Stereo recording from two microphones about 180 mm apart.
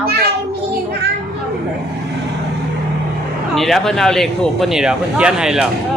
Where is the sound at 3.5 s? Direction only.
Centre (ahead or behind).